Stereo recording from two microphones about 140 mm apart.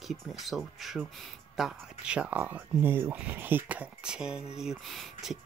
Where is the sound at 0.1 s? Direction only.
Centre (ahead or behind).